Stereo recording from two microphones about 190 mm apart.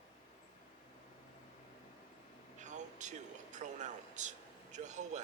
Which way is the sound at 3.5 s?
40° right (ahead or behind).